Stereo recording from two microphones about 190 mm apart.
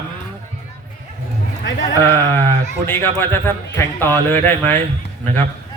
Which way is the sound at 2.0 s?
10° left (ahead or behind).